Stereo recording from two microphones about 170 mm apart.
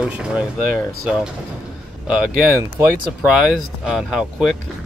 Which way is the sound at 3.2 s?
5° right (ahead or behind).